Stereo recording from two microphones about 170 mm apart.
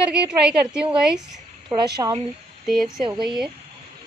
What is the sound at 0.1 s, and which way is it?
Speech, 5° right (ahead or behind).